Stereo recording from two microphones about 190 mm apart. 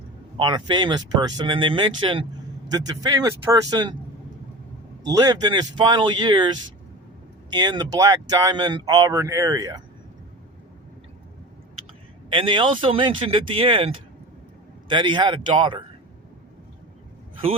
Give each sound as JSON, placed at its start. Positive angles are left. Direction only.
{"t": 0.3, "sound": "speech", "side_deg": -25}
{"t": 5.0, "sound": "speech", "side_deg": -20}
{"t": 12.3, "sound": "speech", "side_deg": -25}